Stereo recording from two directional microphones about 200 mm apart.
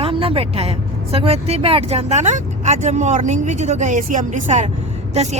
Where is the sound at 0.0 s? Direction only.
25° right (ahead or behind).